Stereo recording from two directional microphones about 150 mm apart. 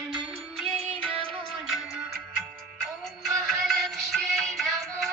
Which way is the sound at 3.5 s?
Centre (ahead or behind).